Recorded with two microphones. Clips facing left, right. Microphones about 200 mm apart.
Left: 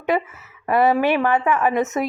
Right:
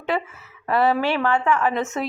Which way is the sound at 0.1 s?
15° left (ahead or behind).